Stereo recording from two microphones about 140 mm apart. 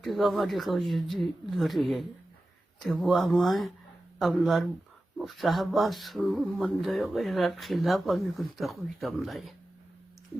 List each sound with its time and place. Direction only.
0.0 s speech: centre (ahead or behind)